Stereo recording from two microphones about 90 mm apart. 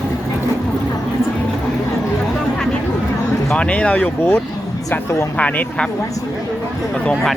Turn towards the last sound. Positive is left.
turn(degrees=15)  # may be behind; listen again after turning